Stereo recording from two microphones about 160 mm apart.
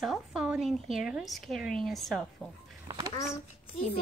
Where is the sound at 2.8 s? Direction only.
25° right (ahead or behind).